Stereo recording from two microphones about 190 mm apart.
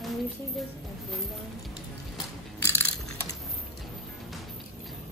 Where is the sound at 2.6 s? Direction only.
15° left (ahead or behind).